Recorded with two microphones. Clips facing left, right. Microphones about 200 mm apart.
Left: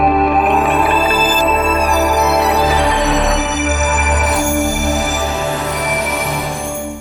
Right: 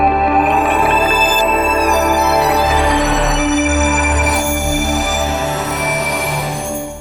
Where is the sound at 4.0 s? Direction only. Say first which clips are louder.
Even; centre (ahead or behind).